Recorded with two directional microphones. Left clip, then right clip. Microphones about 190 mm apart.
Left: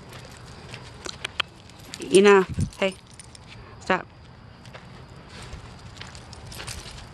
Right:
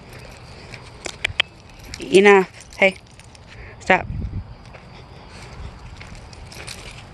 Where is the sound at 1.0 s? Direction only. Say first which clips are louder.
Right 8 dB; 5° right (ahead or behind).